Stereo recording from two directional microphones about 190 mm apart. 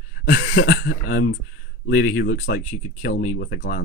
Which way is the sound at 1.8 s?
55° left (ahead or behind).